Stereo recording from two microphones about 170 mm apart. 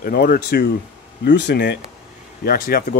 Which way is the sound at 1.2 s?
85° left.